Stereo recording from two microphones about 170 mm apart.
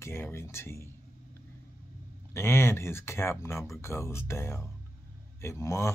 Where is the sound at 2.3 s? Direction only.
15° left (ahead or behind).